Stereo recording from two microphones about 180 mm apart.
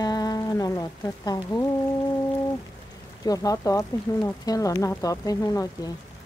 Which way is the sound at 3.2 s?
20° left (ahead or behind).